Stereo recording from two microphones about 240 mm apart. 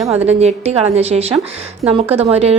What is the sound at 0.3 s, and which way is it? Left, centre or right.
Speech, right.